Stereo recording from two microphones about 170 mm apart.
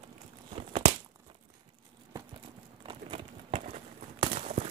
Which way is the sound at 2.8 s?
35° right (ahead or behind).